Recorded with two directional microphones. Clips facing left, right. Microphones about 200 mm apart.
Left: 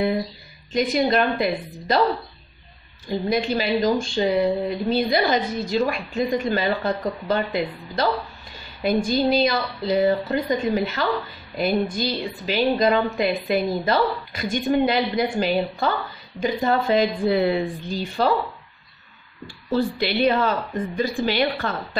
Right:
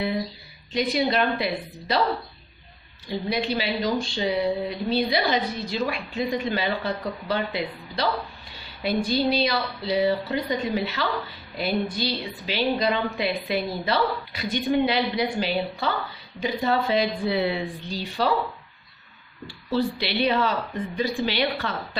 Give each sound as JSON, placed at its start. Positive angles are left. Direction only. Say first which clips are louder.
{"t": 0.7, "sound": "speech", "louder": "left 3 dB", "side_deg": 50}
{"t": 3.1, "sound": "speech", "louder": "left 4 dB", "side_deg": 45}
{"t": 11.5, "sound": "speech", "louder": "left 4 dB", "side_deg": 45}
{"t": 19.4, "sound": "speech", "louder": "left 2 dB", "side_deg": 45}